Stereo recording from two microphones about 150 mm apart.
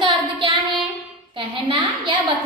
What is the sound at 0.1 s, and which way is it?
Child singing, 30° right (ahead or behind).